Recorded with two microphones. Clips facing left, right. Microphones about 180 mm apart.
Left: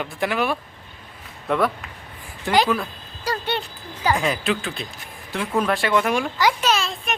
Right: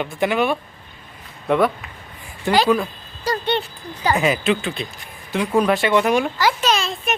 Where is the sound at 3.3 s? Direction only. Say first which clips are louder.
Right 4 dB; 10° left (ahead or behind).